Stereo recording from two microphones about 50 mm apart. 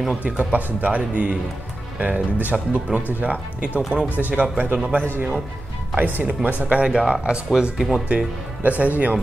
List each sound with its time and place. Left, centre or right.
0.2 s a man's voice: right
5.9 s speech: right
6.9 s speech: centre
8.6 s a man's voice: right